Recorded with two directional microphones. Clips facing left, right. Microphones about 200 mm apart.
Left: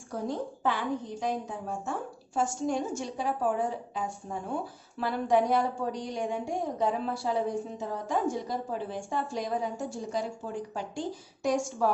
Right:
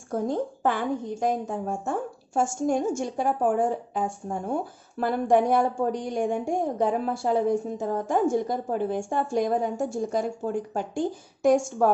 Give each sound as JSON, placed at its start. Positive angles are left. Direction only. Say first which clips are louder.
{"t": 0.1, "sound": "a woman's voice", "louder": "right 6 dB", "side_deg": -50}